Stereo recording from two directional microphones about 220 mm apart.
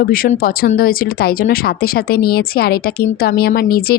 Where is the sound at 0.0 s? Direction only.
40° left (ahead or behind).